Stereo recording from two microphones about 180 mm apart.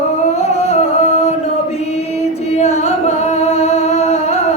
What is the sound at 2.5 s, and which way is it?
Singing, 40° left (ahead or behind).